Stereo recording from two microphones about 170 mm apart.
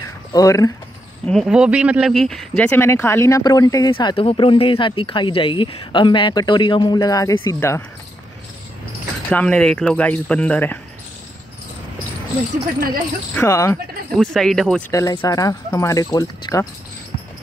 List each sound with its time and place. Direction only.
0.0 s a sound: 20° left (ahead or behind)
1.2 s speech: centre (ahead or behind)
9.3 s speech: 5° left (ahead or behind)
13.3 s speech: 15° left (ahead or behind)
14.1 s speech: centre (ahead or behind)
14.9 s speech: 20° left (ahead or behind)